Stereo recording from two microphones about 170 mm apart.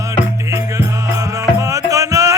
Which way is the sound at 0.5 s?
15° right (ahead or behind).